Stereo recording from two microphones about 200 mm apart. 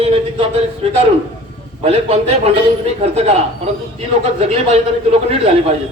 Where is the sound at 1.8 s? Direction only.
30° right (ahead or behind).